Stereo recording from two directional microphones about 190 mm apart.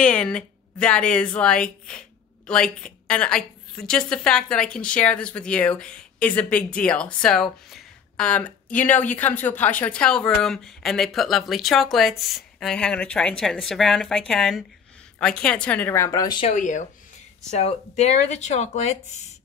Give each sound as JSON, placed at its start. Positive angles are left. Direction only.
{"t": 0.0, "sound": "a woman's voice", "side_deg": 5}
{"t": 16.5, "sound": "speech", "side_deg": 40}